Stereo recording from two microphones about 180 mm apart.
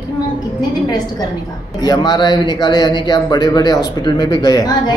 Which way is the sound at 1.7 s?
20° left (ahead or behind).